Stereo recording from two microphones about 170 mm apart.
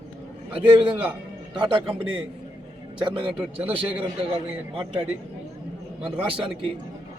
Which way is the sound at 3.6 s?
10° right (ahead or behind).